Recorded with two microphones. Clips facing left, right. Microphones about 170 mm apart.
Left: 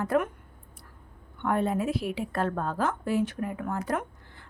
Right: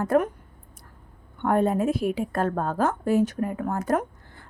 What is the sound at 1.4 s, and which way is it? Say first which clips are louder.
A woman's voice: right 5 dB; 45° right (ahead or behind).